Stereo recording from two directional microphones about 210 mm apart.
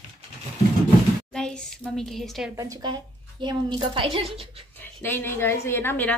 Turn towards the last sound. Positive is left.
turn(degrees=10)  # may be behind; listen again after turning